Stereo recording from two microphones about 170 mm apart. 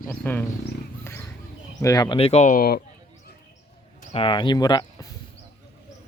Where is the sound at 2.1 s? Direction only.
40° left (ahead or behind); by 2.8 s 60° left (ahead or behind).